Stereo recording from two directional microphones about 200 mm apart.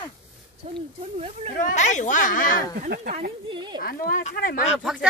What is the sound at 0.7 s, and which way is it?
Speech, 30° right (ahead or behind).